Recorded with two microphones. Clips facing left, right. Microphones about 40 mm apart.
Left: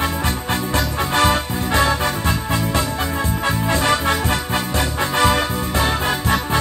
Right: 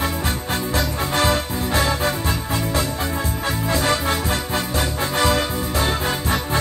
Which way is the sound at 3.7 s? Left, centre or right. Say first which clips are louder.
Left 2 dB; left.